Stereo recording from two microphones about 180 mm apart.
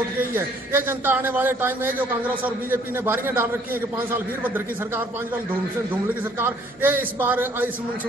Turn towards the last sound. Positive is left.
turn(degrees=-10)  # may be behind; listen again after turning